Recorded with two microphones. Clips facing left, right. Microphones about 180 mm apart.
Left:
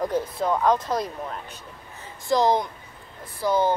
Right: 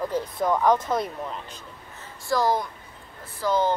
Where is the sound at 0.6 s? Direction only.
20° right (ahead or behind).